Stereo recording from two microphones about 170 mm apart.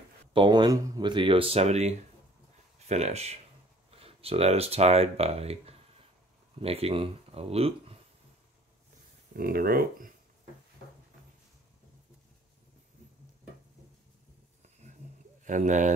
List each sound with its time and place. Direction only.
0.3 s speech: 25° right (ahead or behind)
9.3 s speech: 60° right (ahead or behind)
15.4 s speech: 45° right (ahead or behind)